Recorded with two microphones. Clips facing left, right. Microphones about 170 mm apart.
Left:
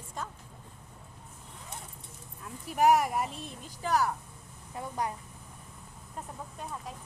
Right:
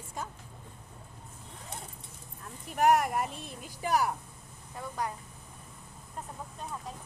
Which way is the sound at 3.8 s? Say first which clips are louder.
Even; 15° right (ahead or behind).